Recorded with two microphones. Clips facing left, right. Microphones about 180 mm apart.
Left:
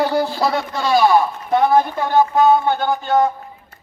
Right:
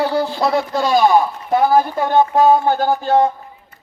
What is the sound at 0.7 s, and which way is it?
Speech, 15° right (ahead or behind).